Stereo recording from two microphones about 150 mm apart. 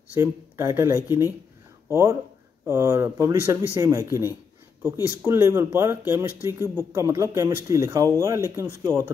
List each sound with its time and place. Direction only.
0.1 s speech: 15° right (ahead or behind)